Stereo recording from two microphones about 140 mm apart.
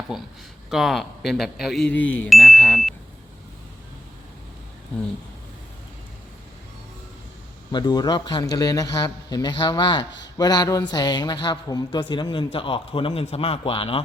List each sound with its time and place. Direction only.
0.1 s a man's voice: 5° right (ahead or behind); by 2.3 s 10° left (ahead or behind)
2.3 s speech: centre (ahead or behind)
7.7 s a man's voice: 30° left (ahead or behind)